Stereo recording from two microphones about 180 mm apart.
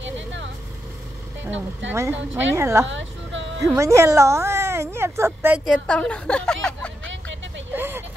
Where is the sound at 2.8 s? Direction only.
90° right.